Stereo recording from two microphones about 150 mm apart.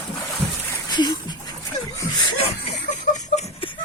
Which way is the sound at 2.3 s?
45° left (ahead or behind).